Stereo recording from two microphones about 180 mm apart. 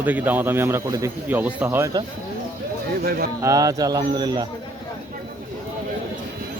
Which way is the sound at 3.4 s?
20° right (ahead or behind).